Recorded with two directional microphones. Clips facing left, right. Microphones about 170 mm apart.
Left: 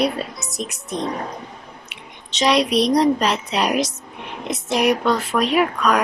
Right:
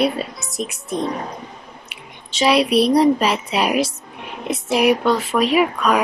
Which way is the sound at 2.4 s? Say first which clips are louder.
Right 2 dB; 5° right (ahead or behind).